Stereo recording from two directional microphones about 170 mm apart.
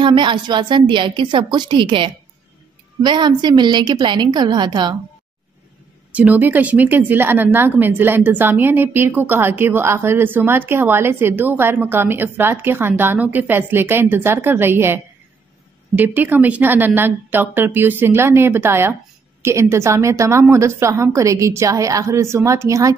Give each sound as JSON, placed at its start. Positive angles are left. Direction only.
{"t": 0.0, "sound": "a woman's voice", "side_deg": -25}
{"t": 6.1, "sound": "speech", "side_deg": -10}
{"t": 16.0, "sound": "speech", "side_deg": -10}